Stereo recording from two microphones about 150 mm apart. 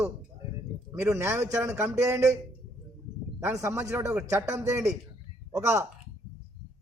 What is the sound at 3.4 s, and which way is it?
A man's voice, 15° right (ahead or behind).